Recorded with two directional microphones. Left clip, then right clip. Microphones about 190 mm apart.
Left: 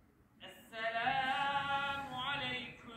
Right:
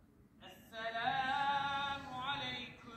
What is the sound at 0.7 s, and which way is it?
Singing, 25° left (ahead or behind).